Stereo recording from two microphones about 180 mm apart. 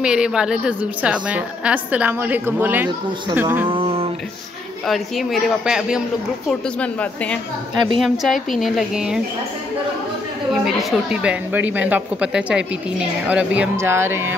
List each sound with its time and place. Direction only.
0.0 s a woman's voice: 5° right (ahead or behind)
3.6 s a sound: 30° right (ahead or behind)
4.8 s a woman's voice: centre (ahead or behind)
6.8 s a woman's voice: 5° left (ahead or behind)
10.5 s a woman's voice: centre (ahead or behind)